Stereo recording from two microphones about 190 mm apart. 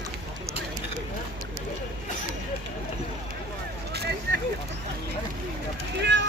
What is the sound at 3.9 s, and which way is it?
Vehicle, 60° right (ahead or behind).